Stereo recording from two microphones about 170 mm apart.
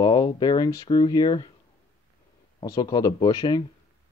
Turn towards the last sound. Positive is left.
turn(degrees=25)  # may be behind; listen again after turning